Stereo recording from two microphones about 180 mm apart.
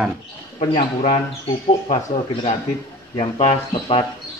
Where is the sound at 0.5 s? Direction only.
45° left (ahead or behind).